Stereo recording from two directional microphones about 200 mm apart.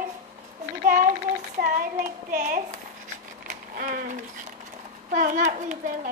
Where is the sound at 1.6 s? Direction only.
45° right (ahead or behind).